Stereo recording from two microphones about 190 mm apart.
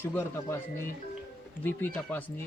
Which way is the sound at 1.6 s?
10° left (ahead or behind).